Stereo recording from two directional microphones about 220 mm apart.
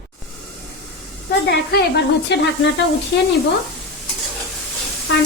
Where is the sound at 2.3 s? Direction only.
50° left (ahead or behind).